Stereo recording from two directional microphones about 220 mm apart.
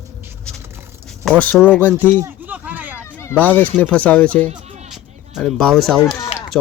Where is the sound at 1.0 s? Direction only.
Centre (ahead or behind).